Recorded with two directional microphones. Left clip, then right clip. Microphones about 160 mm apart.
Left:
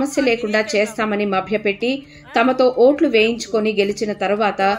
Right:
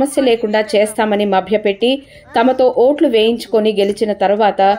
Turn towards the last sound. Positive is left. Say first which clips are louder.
# right 6 dB
turn(degrees=-25)  # may be behind; listen again after turning